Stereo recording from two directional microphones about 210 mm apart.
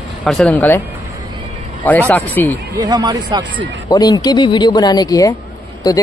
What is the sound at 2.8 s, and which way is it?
Speech, 20° right (ahead or behind).